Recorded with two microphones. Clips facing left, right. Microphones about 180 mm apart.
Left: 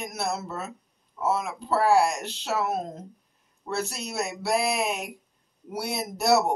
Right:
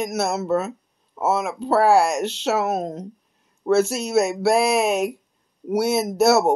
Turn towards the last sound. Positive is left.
turn(degrees=-80)